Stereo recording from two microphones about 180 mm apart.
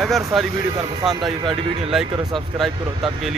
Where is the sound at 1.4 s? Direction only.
30° right (ahead or behind).